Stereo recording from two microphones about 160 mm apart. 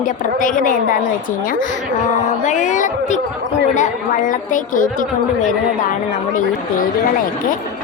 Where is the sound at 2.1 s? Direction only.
50° left (ahead or behind).